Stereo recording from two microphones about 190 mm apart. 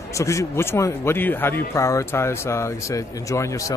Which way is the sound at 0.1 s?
15° left (ahead or behind).